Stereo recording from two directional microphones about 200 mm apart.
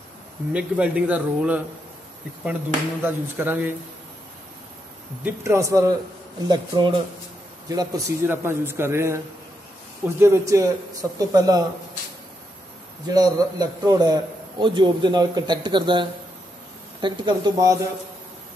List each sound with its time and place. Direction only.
0.5 s a man's voice: 5° right (ahead or behind)
3.0 s a man's voice: 10° right (ahead or behind)
5.2 s a man's voice: 15° right (ahead or behind)
13.0 s a man's voice: 20° right (ahead or behind)